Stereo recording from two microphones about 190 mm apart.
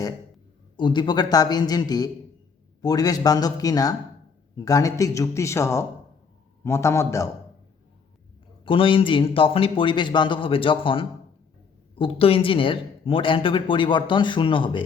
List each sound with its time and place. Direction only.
0.8 s a man's voice: 25° left (ahead or behind)
8.6 s speech: 25° left (ahead or behind)